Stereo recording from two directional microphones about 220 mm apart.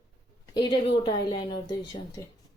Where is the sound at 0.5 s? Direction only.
20° left (ahead or behind).